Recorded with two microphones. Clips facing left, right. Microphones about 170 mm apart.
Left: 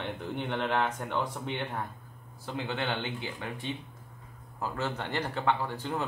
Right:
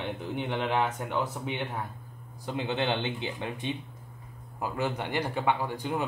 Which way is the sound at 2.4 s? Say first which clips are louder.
Right 4 dB; 20° right (ahead or behind).